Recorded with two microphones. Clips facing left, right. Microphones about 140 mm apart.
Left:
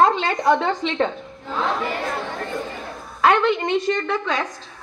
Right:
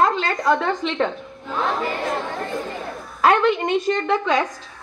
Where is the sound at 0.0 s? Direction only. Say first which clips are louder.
Left 2 dB; 25° left (ahead or behind).